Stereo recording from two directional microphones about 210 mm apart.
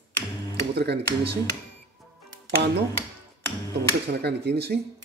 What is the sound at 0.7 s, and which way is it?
Speech, 50° right (ahead or behind).